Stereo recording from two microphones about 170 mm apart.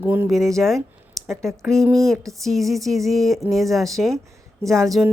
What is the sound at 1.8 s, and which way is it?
Speech, 20° right (ahead or behind).